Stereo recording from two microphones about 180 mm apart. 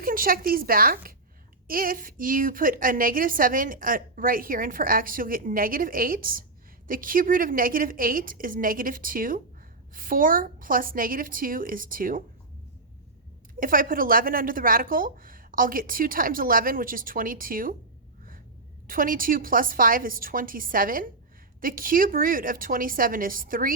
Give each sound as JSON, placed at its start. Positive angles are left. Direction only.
{"t": 0.0, "sound": "speech", "side_deg": -50}
{"t": 13.6, "sound": "speech", "side_deg": -50}
{"t": 18.9, "sound": "speech", "side_deg": -50}